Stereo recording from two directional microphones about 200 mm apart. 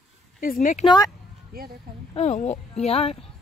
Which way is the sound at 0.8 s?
20° left (ahead or behind).